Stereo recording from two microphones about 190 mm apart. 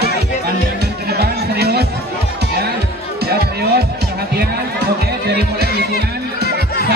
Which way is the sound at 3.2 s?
55° right (ahead or behind).